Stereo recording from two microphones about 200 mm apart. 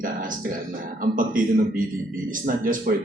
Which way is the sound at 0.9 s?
45° right (ahead or behind).